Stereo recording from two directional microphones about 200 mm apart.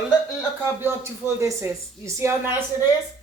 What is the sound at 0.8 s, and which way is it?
Speech, 15° right (ahead or behind).